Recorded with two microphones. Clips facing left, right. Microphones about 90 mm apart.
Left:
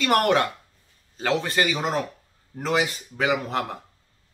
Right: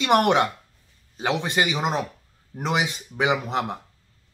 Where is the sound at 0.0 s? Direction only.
20° right (ahead or behind).